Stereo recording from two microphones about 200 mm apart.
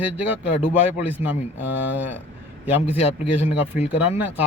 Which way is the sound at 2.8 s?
30° left (ahead or behind).